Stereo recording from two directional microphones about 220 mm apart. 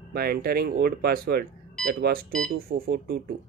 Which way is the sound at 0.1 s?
45° right (ahead or behind).